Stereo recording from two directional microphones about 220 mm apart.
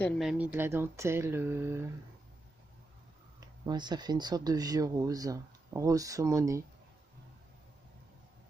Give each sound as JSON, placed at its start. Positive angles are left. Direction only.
{"t": 0.0, "sound": "speech", "side_deg": 0}
{"t": 3.3, "sound": "speech", "side_deg": -20}